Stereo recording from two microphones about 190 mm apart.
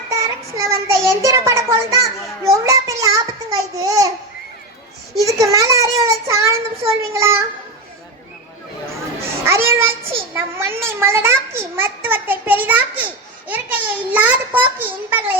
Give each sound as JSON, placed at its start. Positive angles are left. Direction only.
{"t": 0.1, "sound": "child singing", "side_deg": -15}
{"t": 2.4, "sound": "a sound", "side_deg": -15}
{"t": 5.2, "sound": "child singing", "side_deg": -15}
{"t": 7.0, "sound": "a child's voice", "side_deg": -15}
{"t": 9.5, "sound": "a child's voice", "side_deg": -15}